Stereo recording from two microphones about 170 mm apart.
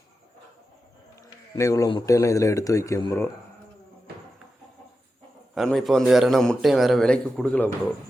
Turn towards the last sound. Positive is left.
turn(degrees=10)  # may be behind; listen again after turning